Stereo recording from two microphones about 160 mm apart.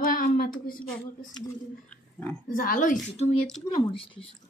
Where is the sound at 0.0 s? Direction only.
65° left (ahead or behind).